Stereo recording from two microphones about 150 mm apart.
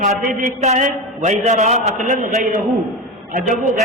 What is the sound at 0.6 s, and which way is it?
A man's voice, 50° right (ahead or behind).